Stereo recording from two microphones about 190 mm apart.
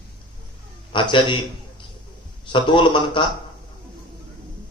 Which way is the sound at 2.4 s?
25° left (ahead or behind).